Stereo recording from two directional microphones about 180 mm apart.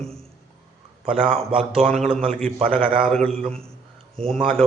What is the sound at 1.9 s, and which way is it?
Speech, 5° left (ahead or behind).